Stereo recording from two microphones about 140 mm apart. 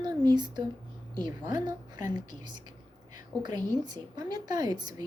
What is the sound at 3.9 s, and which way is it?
A woman's voice, 30° right (ahead or behind).